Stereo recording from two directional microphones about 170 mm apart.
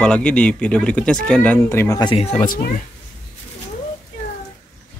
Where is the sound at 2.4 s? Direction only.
55° left (ahead or behind).